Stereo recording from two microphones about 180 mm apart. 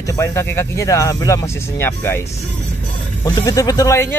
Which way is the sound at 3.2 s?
20° left (ahead or behind).